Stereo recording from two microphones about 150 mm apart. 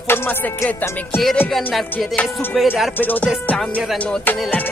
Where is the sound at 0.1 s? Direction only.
15° left (ahead or behind).